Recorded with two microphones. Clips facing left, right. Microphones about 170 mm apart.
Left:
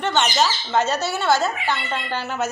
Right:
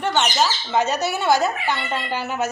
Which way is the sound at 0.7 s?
15° right (ahead or behind).